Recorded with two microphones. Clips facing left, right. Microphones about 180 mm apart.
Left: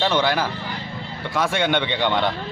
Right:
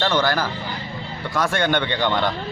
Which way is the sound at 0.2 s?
5° left (ahead or behind).